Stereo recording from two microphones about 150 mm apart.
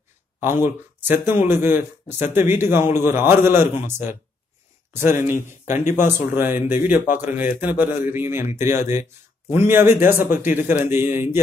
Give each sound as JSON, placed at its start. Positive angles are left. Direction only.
{"t": 0.4, "sound": "speech", "side_deg": -15}
{"t": 5.2, "sound": "speech", "side_deg": 55}
{"t": 5.9, "sound": "speech", "side_deg": -15}